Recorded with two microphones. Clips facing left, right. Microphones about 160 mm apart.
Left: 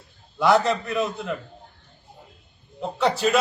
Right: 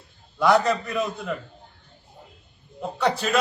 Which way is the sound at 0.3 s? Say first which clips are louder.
Even; centre (ahead or behind).